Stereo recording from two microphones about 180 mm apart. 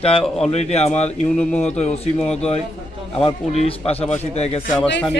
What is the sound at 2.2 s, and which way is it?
Speech, 35° left (ahead or behind).